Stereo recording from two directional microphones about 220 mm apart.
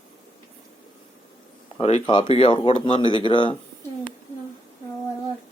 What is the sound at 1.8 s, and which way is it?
Speech, 25° left (ahead or behind).